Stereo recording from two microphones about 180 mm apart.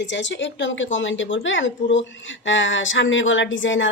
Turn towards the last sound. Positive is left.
turn(degrees=90)